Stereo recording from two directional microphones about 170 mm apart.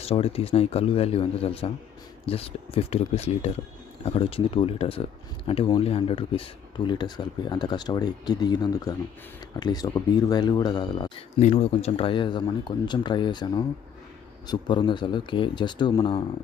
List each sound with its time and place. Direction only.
0.0 s a man's voice: 35° left (ahead or behind)
11.3 s speech: 40° left (ahead or behind)